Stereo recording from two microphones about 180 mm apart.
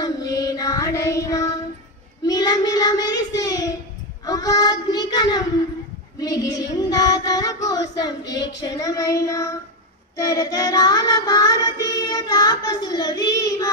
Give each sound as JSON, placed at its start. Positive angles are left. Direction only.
{"t": 0.0, "sound": "child singing", "side_deg": 20}
{"t": 8.4, "sound": "a sound", "side_deg": 75}
{"t": 8.6, "sound": "child singing", "side_deg": 20}